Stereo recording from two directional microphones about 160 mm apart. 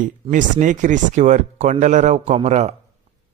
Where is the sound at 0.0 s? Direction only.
55° right (ahead or behind).